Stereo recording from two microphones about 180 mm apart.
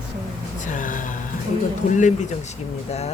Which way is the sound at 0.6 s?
45° left (ahead or behind).